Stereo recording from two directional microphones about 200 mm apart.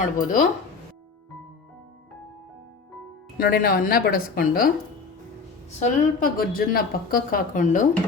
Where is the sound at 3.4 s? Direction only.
50° left (ahead or behind).